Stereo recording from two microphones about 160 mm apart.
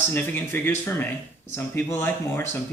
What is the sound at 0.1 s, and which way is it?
Speech, 10° left (ahead or behind).